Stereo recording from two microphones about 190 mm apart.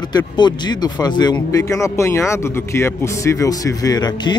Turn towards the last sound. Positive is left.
turn(degrees=20)  # may be behind; listen again after turning